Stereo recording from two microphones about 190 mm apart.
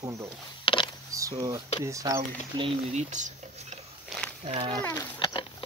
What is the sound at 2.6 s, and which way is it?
Speech, 35° right (ahead or behind).